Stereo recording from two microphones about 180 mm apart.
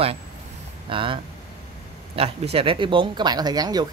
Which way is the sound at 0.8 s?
30° right (ahead or behind).